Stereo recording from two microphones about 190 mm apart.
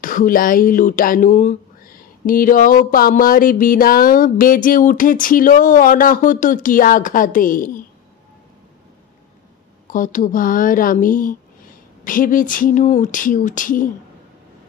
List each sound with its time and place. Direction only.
0.0 s speech: 45° left (ahead or behind)
9.8 s speech: 45° left (ahead or behind)